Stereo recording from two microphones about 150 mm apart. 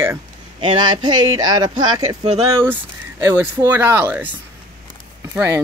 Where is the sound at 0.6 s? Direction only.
30° right (ahead or behind).